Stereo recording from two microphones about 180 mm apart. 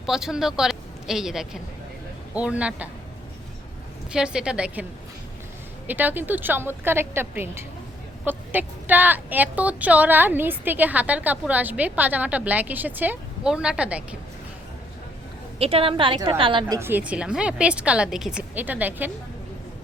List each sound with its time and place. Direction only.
0.0 s a woman's voice: centre (ahead or behind)
4.1 s a woman's voice: 5° right (ahead or behind)
5.9 s a woman's voice: 10° right (ahead or behind)
15.5 s a woman's voice: 30° right (ahead or behind); by 19.1 s 10° right (ahead or behind)